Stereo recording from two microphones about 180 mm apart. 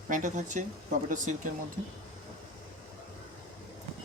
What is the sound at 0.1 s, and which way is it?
Speech, 45° right (ahead or behind).